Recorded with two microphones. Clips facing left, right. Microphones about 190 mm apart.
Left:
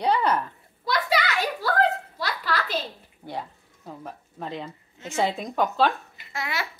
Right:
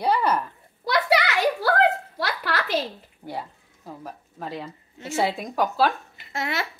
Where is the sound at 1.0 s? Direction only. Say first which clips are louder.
Right 5 dB; 65° right (ahead or behind).